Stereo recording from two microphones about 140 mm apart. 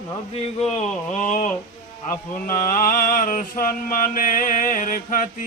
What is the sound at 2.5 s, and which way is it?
Mantra, 75° left (ahead or behind).